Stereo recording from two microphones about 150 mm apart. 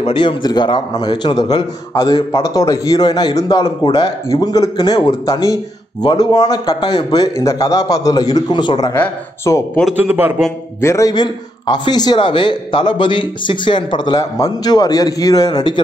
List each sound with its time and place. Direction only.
0.0 s speech: 35° left (ahead or behind)
8.9 s speech: 15° left (ahead or behind)
9.9 s a man's voice: 10° right (ahead or behind)
10.8 s speech: 20° left (ahead or behind)